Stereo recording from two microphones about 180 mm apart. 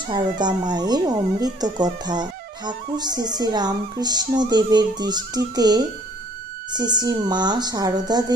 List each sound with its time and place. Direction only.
0.1 s speech: 25° right (ahead or behind)